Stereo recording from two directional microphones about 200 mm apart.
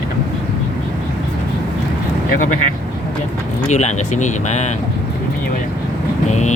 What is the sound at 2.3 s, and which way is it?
Speech, 40° left (ahead or behind).